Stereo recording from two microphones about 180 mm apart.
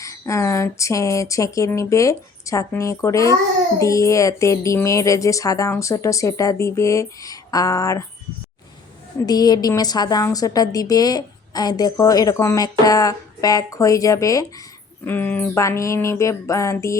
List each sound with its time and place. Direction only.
0.0 s speech: 15° left (ahead or behind)
9.2 s a woman's voice: 20° left (ahead or behind)